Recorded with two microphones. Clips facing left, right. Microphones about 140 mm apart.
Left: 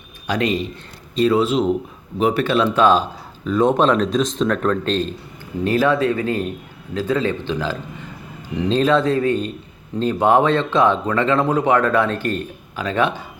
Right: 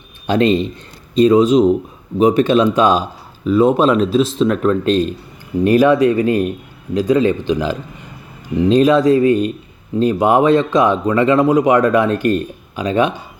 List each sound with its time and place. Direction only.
0.3 s speech: 25° right (ahead or behind)